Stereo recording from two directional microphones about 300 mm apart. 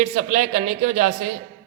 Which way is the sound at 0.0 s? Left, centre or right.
Right.